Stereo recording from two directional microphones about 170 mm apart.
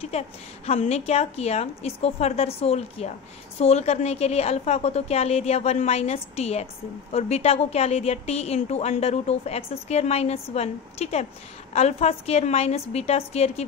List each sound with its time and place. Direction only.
0.7 s a woman's voice: 40° left (ahead or behind)